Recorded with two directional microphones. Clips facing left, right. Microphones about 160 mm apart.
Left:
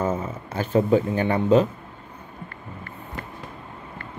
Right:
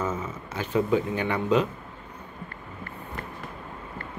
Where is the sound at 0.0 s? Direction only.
30° left (ahead or behind).